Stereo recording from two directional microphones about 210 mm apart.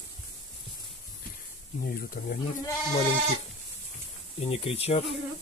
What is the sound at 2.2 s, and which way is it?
Speech, 40° left (ahead or behind).